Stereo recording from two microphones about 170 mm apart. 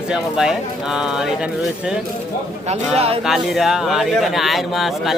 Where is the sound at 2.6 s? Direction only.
35° right (ahead or behind).